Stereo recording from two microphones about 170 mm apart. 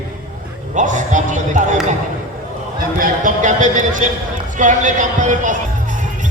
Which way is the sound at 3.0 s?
50° right (ahead or behind).